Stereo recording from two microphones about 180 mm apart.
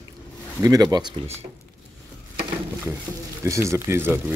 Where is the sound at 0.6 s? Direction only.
20° right (ahead or behind).